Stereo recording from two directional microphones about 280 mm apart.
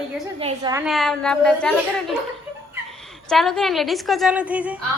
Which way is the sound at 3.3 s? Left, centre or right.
Centre.